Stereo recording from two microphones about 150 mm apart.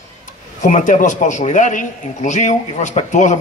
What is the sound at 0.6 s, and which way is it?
A man's voice, 55° left (ahead or behind).